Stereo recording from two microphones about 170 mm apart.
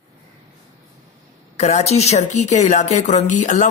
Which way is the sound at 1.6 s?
40° left (ahead or behind).